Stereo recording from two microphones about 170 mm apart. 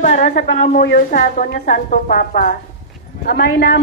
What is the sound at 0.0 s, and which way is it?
A woman's voice, 50° left (ahead or behind).